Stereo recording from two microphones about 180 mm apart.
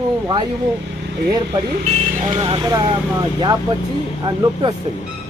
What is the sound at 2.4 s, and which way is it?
Speech, 30° right (ahead or behind).